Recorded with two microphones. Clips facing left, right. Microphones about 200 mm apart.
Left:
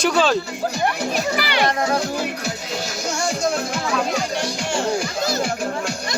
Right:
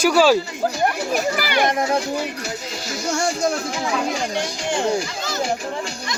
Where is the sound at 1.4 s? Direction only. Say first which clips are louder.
Right 1 dB; 50° right (ahead or behind).